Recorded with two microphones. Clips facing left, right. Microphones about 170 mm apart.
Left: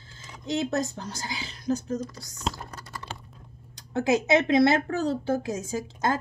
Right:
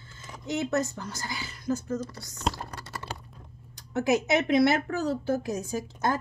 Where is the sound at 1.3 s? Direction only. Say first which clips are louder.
Left 2 dB; 20° left (ahead or behind).